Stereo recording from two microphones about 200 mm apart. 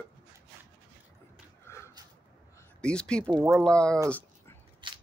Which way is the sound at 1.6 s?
15° left (ahead or behind).